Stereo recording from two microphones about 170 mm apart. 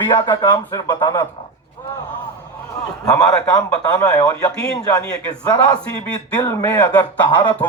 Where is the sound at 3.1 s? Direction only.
20° left (ahead or behind).